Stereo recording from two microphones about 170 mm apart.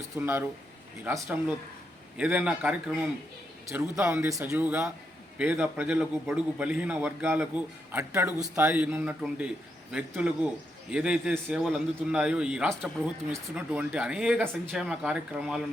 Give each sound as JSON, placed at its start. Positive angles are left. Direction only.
{"t": 0.2, "sound": "a man's voice", "side_deg": -15}
{"t": 4.0, "sound": "a man's voice", "side_deg": -15}